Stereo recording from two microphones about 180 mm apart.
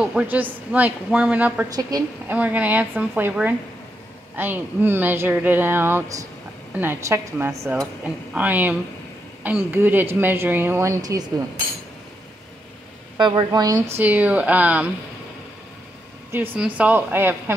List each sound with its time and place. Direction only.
0.0 s speech: 5° right (ahead or behind)
1.7 s speech: 20° right (ahead or behind)
2.2 s speech: 10° right (ahead or behind)
13.2 s speech: 25° right (ahead or behind)
13.9 s speech: 10° right (ahead or behind)
16.5 s speech: 5° right (ahead or behind)